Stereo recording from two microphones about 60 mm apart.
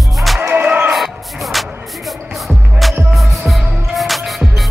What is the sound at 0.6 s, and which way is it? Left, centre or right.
Music, right.